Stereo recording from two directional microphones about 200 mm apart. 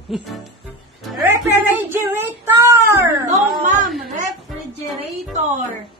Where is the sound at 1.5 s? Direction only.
10° right (ahead or behind).